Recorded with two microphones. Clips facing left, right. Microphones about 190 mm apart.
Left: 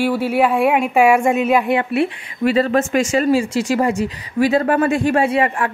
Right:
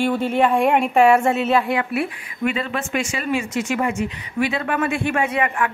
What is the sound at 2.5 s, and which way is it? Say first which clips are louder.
Speech: left 8 dB; 40° left (ahead or behind).